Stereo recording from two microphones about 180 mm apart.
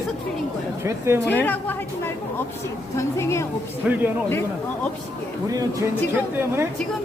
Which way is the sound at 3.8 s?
5° right (ahead or behind).